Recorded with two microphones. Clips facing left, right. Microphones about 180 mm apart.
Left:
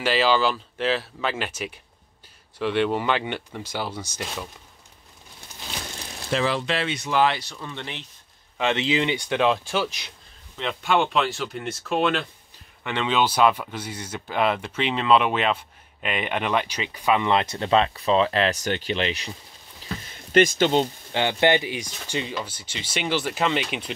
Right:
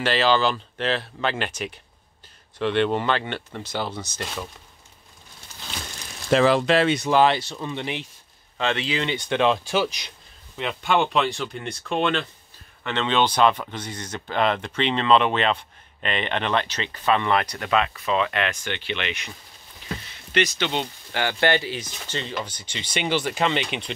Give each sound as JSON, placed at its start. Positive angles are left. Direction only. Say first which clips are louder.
{"t": 0.0, "sound": "speech", "louder": "even", "side_deg": 10}
{"t": 6.3, "sound": "speech", "louder": "right 7 dB", "side_deg": -50}
{"t": 8.5, "sound": "speech", "louder": "left 2 dB", "side_deg": 20}
{"t": 20.1, "sound": "speech", "louder": "left 6 dB", "side_deg": 45}
{"t": 21.1, "sound": "speech", "louder": "left 1 dB", "side_deg": 20}